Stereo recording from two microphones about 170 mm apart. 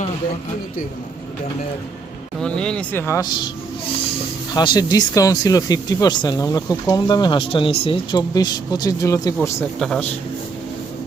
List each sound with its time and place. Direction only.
2.4 s speech: 5° left (ahead or behind)
4.5 s speech: 25° left (ahead or behind)
9.7 s a man's voice: 5° left (ahead or behind)